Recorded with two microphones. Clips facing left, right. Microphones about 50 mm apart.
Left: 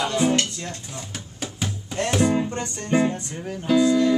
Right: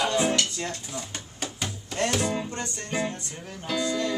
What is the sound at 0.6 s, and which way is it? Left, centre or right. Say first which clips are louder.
Speech: right 1 dB; centre.